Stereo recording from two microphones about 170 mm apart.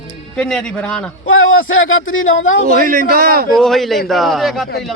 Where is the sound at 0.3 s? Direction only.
5° left (ahead or behind).